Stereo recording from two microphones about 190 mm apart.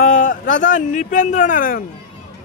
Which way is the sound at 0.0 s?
45° left (ahead or behind).